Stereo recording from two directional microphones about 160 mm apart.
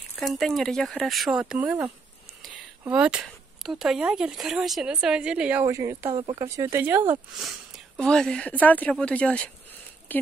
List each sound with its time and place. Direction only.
0.2 s speech: centre (ahead or behind)
2.9 s speech: 5° right (ahead or behind)
6.0 s speech: 35° right (ahead or behind)
6.4 s speech: 20° right (ahead or behind)
7.4 s speech: centre (ahead or behind)